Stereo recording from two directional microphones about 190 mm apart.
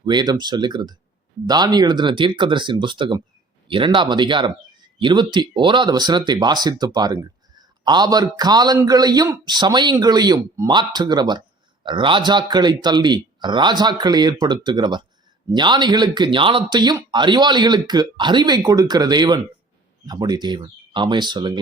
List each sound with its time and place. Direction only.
0.0 s a man's voice: 25° right (ahead or behind)